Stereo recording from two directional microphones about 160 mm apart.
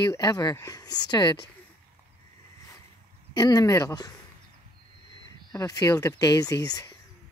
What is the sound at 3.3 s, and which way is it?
Speech, 25° left (ahead or behind).